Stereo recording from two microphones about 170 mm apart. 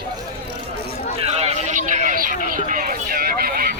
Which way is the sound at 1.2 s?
40° right (ahead or behind).